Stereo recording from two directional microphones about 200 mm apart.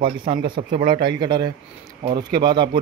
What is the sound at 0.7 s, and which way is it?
Speech, 50° right (ahead or behind).